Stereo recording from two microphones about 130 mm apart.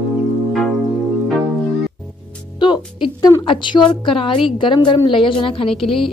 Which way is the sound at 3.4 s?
35° left (ahead or behind).